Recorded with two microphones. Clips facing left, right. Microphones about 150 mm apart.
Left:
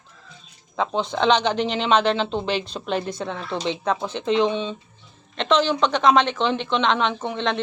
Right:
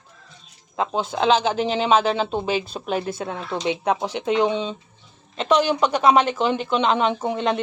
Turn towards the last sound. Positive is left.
turn(degrees=-10)  # may be behind; listen again after turning